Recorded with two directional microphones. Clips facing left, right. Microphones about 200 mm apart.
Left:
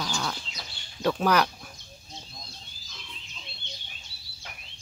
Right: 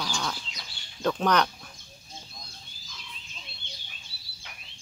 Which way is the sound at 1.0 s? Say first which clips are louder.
Left 1 dB; 5° left (ahead or behind).